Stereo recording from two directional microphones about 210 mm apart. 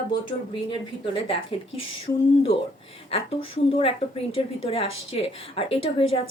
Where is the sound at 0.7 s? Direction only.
25° left (ahead or behind).